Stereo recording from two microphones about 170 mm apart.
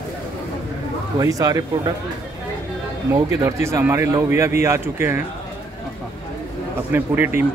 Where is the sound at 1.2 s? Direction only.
20° right (ahead or behind).